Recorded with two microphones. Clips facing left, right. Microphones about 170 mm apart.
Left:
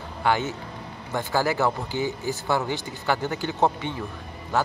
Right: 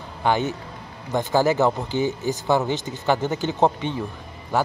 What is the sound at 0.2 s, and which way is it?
A man's voice, 20° right (ahead or behind).